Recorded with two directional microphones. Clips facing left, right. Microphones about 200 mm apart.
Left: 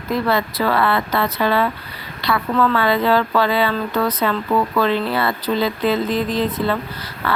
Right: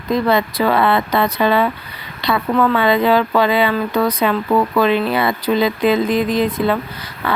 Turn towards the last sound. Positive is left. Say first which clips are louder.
# right 1 dB
turn(degrees=-20)  # may be behind; listen again after turning